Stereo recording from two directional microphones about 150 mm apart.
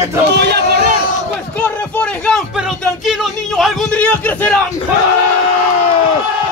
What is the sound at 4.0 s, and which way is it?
Speech, 10° left (ahead or behind).